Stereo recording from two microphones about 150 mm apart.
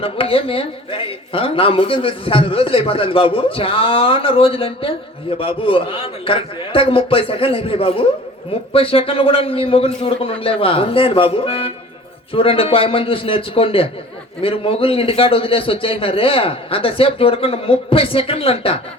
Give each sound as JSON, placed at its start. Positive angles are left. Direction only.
{"t": 0.0, "sound": "a woman's voice", "side_deg": 40}